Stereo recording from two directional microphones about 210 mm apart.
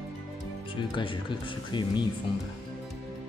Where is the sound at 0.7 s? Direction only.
25° left (ahead or behind).